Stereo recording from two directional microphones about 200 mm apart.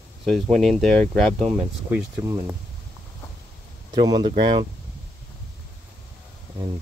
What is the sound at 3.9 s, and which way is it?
Speech, 20° right (ahead or behind).